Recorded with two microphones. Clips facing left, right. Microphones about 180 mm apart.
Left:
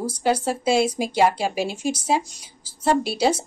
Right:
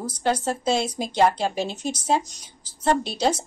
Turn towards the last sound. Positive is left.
turn(degrees=10)  # may be behind; listen again after turning